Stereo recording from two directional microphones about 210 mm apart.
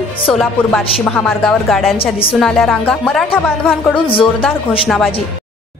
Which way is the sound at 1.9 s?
25° left (ahead or behind).